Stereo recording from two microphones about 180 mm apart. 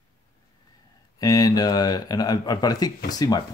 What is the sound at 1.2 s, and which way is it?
Speech, 20° left (ahead or behind).